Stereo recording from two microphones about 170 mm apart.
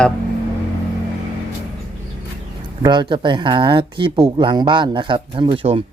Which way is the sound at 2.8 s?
25° right (ahead or behind).